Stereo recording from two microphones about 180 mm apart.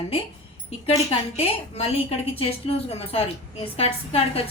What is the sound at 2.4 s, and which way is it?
A woman's voice, 35° left (ahead or behind).